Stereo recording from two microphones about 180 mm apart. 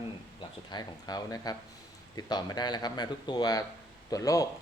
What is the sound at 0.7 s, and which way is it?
A man's voice, 20° left (ahead or behind).